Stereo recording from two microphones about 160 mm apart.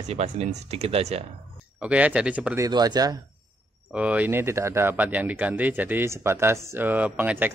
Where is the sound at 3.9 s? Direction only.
10° right (ahead or behind).